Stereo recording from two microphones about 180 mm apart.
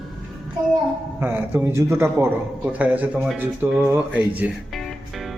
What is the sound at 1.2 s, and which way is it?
Speech, 10° right (ahead or behind).